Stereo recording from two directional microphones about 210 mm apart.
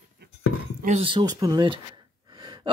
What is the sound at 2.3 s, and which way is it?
Gasp, 20° right (ahead or behind).